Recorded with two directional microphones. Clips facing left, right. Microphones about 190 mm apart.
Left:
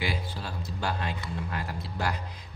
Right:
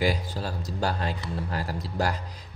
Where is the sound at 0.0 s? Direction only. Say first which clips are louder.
Right 6 dB; 40° right (ahead or behind).